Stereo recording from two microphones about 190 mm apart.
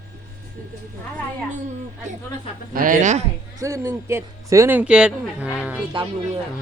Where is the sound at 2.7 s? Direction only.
45° right (ahead or behind).